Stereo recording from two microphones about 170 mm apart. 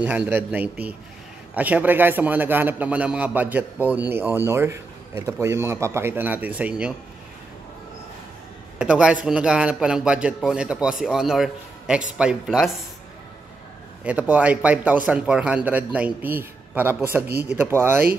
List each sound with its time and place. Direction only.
0.0 s a man's voice: 10° right (ahead or behind)
8.7 s a man's voice: 5° right (ahead or behind)
14.0 s a man's voice: 10° right (ahead or behind)